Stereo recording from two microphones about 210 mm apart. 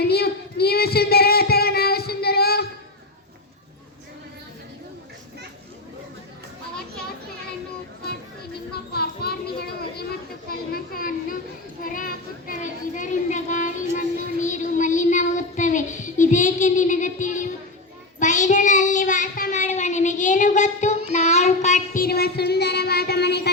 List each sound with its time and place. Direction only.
0.0 s child singing: 50° left (ahead or behind)
8.9 s children playing: 50° left (ahead or behind)
11.8 s child singing: 40° left (ahead or behind)